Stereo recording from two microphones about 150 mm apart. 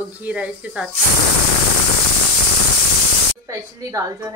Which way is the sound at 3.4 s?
20° right (ahead or behind).